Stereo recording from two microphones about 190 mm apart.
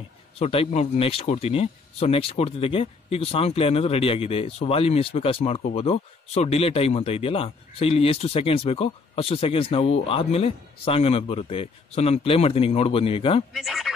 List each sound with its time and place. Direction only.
0.4 s speech: 30° left (ahead or behind)
13.5 s speech: centre (ahead or behind)